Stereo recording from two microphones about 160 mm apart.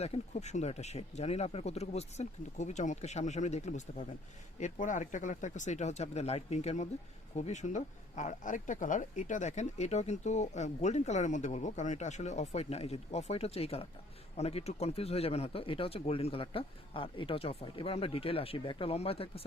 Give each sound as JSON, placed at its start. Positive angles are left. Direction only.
{"t": 0.0, "sound": "speech", "side_deg": 45}